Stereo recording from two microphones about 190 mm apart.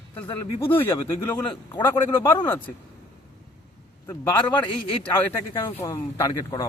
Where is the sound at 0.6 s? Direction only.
10° left (ahead or behind).